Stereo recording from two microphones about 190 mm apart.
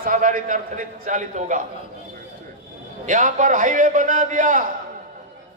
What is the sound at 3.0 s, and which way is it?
A man's voice, 45° right (ahead or behind).